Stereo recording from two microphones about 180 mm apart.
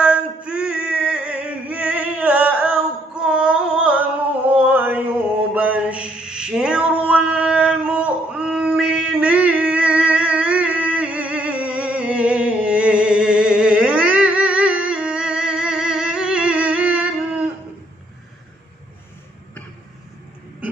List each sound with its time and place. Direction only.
0.0 s male singing: 5° right (ahead or behind)
3.2 s carnatic music: 5° right (ahead or behind)
4.6 s a sound: 10° right (ahead or behind)